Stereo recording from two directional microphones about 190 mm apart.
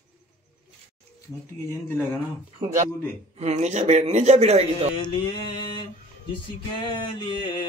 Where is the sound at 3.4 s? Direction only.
35° right (ahead or behind).